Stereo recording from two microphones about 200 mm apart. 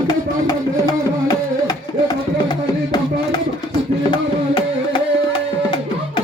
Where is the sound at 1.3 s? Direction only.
20° left (ahead or behind).